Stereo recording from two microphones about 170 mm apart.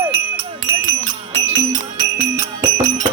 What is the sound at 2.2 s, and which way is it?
Music, 20° right (ahead or behind).